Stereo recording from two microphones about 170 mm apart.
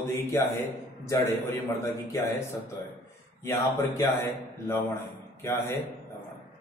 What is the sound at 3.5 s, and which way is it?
A man's voice, 15° left (ahead or behind).